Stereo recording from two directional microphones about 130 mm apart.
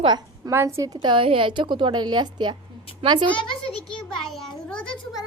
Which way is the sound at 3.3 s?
10° left (ahead or behind).